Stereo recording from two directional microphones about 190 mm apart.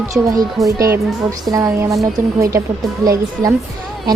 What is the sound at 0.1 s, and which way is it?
Speech, 20° right (ahead or behind).